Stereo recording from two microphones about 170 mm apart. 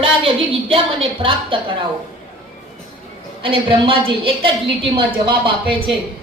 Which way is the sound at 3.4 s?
30° right (ahead or behind).